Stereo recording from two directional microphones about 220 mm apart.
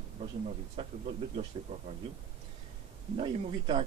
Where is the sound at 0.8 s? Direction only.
25° right (ahead or behind).